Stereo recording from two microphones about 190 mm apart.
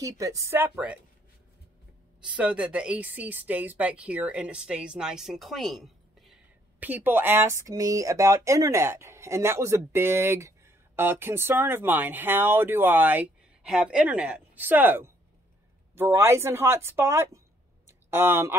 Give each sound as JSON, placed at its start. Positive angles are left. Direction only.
{"t": 0.0, "sound": "speech", "side_deg": -15}
{"t": 2.3, "sound": "speech", "side_deg": -5}